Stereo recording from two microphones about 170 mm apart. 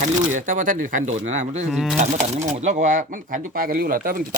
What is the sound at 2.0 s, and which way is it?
Speech, 45° right (ahead or behind).